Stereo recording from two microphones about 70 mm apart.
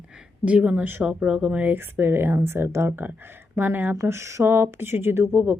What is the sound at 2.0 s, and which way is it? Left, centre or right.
Speech, right.